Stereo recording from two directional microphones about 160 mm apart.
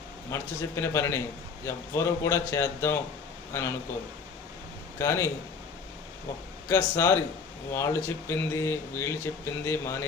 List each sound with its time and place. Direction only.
0.3 s speech: 15° left (ahead or behind)
4.9 s speech: 15° left (ahead or behind)
6.7 s speech: 15° left (ahead or behind)